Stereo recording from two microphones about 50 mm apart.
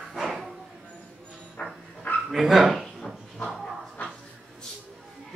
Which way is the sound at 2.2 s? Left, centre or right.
Centre.